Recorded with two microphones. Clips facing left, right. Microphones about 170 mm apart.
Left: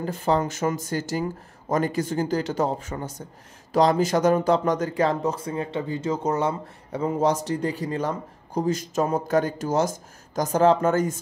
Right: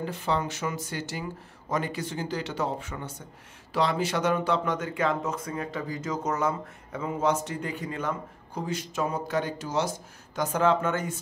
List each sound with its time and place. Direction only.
0.0 s speech: 45° left (ahead or behind)